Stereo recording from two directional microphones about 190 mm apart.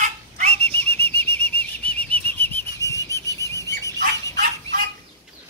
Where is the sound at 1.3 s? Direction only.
10° left (ahead or behind).